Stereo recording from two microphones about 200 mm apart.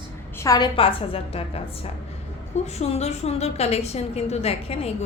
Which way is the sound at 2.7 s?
35° left (ahead or behind).